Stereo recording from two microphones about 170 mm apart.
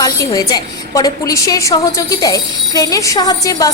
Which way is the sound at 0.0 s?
20° left (ahead or behind).